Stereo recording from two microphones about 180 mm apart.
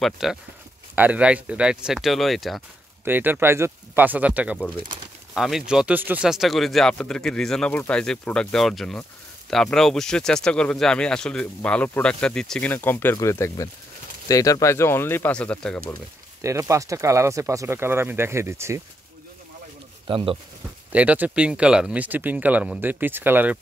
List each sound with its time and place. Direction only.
0.0 s speech: centre (ahead or behind)
3.1 s speech: 10° right (ahead or behind)
4.8 s speech: 25° right (ahead or behind)
5.3 s speech: centre (ahead or behind)
16.3 s speech: 15° right (ahead or behind)
20.1 s speech: 30° right (ahead or behind)
20.9 s speech: 10° right (ahead or behind)